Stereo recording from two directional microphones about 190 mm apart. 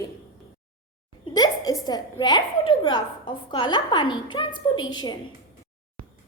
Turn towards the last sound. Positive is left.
turn(degrees=20)  # may be behind; listen again after turning